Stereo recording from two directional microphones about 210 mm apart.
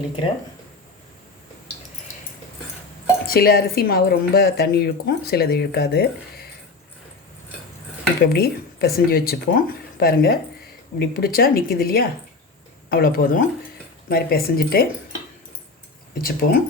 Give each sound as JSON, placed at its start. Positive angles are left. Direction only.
{"t": 3.2, "sound": "speech", "side_deg": 45}
{"t": 8.2, "sound": "speech", "side_deg": 50}
{"t": 16.1, "sound": "speech", "side_deg": 45}